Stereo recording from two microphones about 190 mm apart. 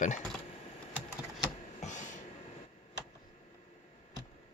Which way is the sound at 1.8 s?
40° left (ahead or behind).